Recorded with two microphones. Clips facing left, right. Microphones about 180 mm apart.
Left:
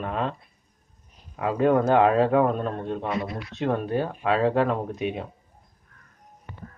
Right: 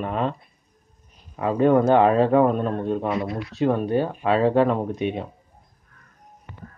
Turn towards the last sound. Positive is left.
turn(degrees=5)  # may be behind; listen again after turning